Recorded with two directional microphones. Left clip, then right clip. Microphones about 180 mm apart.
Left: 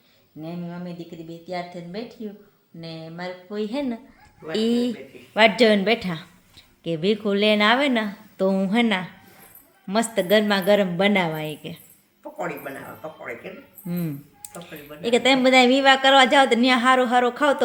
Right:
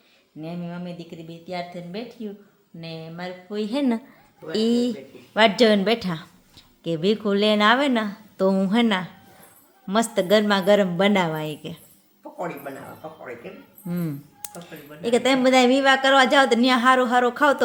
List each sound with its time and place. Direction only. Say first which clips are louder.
0.4 s speech: right 1 dB; centre (ahead or behind)
4.5 s a woman's voice: right 1 dB; 10° right (ahead or behind)
13.8 s a woman's voice: right 1 dB; 5° right (ahead or behind)